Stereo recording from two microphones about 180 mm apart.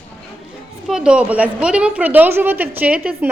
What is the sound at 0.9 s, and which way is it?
A woman's voice, 5° right (ahead or behind).